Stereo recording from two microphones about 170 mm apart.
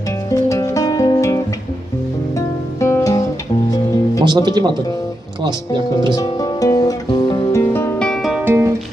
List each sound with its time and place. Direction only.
0.3 s music: 20° left (ahead or behind)
2.8 s guitar: 20° left (ahead or behind)
3.7 s music: 20° left (ahead or behind)
4.2 s speech: 25° right (ahead or behind)
6.1 s music: 20° left (ahead or behind)
7.7 s music: 10° left (ahead or behind); by 8.7 s 15° right (ahead or behind)